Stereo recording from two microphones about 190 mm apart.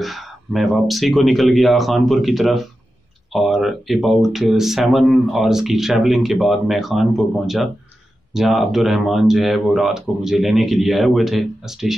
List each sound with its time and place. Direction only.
0.0 s speech: centre (ahead or behind)